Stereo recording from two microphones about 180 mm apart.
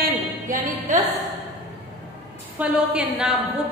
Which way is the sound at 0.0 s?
45° right (ahead or behind).